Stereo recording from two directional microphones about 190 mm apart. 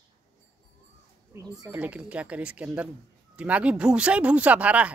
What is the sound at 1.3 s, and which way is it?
Speech, 20° right (ahead or behind).